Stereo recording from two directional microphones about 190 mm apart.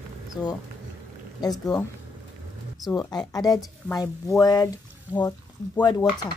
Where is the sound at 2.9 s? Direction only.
20° left (ahead or behind).